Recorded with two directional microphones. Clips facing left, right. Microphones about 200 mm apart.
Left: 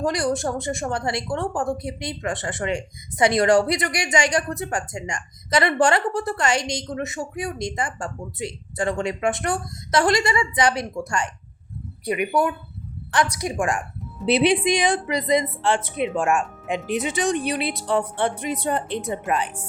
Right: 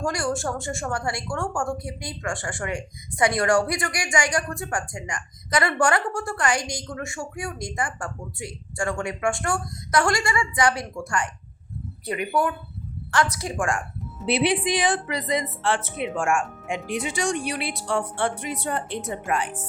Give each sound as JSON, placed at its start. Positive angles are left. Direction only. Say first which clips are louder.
{"t": 0.0, "sound": "a woman's voice", "louder": "left 3 dB", "side_deg": 20}